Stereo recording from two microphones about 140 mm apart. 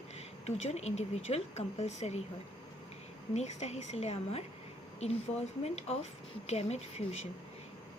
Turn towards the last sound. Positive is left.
turn(degrees=50)  # may be behind; listen again after turning